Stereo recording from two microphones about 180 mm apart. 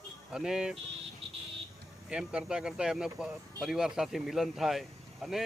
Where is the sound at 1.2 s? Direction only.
30° right (ahead or behind).